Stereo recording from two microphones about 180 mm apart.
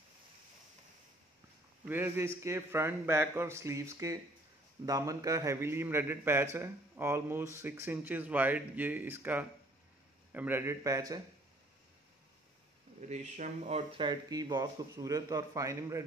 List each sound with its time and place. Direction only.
1.9 s a man's voice: 10° right (ahead or behind)
13.1 s speech: 40° right (ahead or behind); by 16.0 s 15° right (ahead or behind)